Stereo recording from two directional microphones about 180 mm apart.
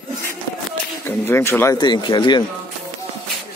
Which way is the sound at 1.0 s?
15° left (ahead or behind).